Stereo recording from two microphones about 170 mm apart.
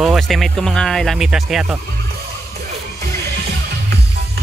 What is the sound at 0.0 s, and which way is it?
Speech, centre (ahead or behind).